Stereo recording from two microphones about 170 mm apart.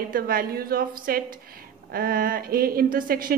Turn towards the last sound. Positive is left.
turn(degrees=-55)  # may be behind; listen again after turning